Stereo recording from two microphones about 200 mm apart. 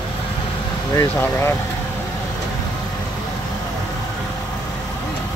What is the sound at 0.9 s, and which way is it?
Speech, 15° left (ahead or behind).